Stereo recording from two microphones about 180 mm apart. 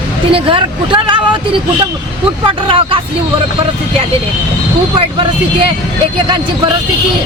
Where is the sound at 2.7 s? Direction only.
30° right (ahead or behind).